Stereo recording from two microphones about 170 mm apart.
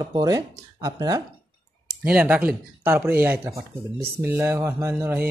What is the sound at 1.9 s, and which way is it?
Mantra, 5° right (ahead or behind).